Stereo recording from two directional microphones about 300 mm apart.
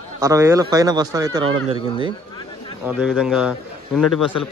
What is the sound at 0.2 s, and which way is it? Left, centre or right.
A man's voice, centre.